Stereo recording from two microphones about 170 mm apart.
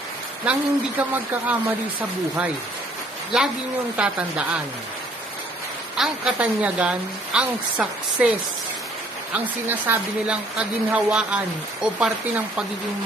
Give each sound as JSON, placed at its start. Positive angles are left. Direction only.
{"t": 0.5, "sound": "speech", "side_deg": -10}
{"t": 5.9, "sound": "speech", "side_deg": -5}
{"t": 9.3, "sound": "speech", "side_deg": -10}